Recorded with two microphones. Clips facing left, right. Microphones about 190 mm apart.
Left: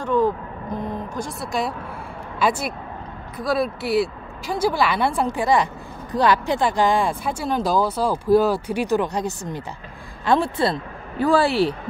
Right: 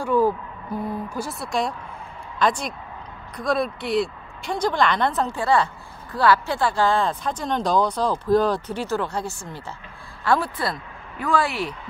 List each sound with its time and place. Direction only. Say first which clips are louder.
0.0 s a woman's voice: even; 10° right (ahead or behind); by 11.7 s 30° left (ahead or behind)